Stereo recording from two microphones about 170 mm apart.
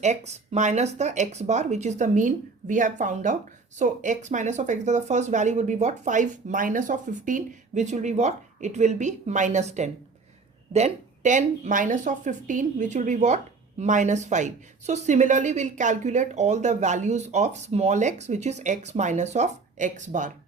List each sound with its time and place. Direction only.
0.0 s speech: 40° right (ahead or behind)